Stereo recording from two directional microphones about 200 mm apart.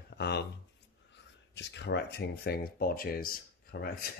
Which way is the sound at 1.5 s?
60° left (ahead or behind).